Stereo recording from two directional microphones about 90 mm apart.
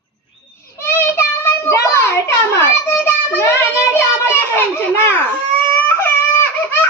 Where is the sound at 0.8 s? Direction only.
25° left (ahead or behind).